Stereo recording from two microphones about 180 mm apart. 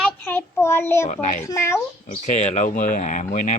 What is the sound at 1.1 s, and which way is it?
Speech, 45° left (ahead or behind).